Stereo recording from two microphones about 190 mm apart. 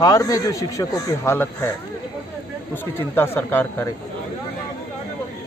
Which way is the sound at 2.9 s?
10° left (ahead or behind).